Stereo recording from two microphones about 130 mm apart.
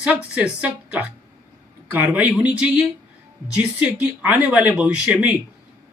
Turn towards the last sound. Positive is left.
turn(degrees=-10)  # may be behind; listen again after turning